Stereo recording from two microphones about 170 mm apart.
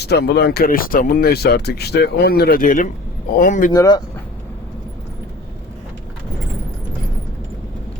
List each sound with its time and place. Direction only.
0.0 s speech: 75° left (ahead or behind); by 3.7 s 55° left (ahead or behind)
3.8 s speech: 25° left (ahead or behind)